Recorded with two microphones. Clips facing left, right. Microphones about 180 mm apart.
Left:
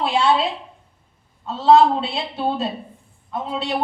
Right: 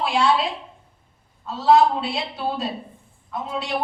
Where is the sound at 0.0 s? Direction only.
25° left (ahead or behind).